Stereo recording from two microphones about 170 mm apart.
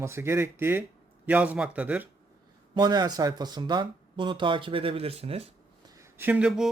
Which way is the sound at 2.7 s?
25° right (ahead or behind).